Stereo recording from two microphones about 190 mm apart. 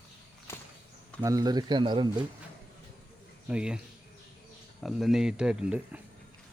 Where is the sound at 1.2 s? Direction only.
20° right (ahead or behind).